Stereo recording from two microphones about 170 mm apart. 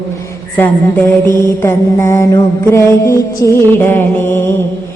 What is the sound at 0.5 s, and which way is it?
Mantra, 10° left (ahead or behind).